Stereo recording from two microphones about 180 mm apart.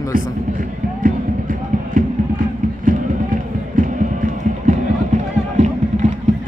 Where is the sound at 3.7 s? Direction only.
45° right (ahead or behind).